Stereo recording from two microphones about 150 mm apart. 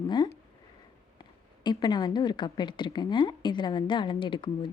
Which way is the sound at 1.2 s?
30° left (ahead or behind).